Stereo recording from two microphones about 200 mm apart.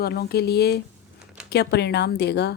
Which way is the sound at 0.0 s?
50° left (ahead or behind).